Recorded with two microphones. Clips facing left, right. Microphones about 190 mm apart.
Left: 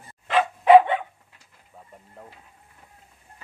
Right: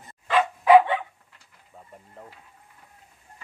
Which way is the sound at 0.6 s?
25° left (ahead or behind).